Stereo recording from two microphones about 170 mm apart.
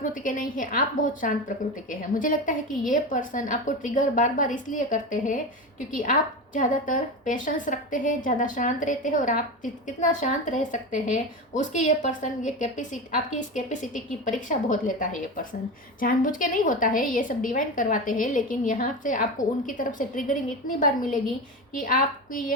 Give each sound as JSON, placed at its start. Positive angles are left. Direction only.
{"t": 0.0, "sound": "a woman's voice", "side_deg": 50}